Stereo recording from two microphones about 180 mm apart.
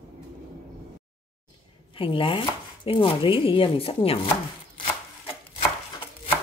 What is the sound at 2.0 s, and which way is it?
Chopping, 30° left (ahead or behind).